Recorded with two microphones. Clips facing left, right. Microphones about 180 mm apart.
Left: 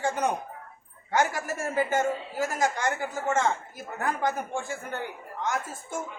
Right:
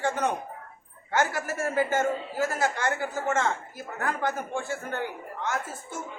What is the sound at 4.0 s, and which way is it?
Speech, 15° left (ahead or behind).